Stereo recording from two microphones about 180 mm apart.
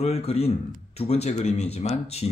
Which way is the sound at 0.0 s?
35° left (ahead or behind).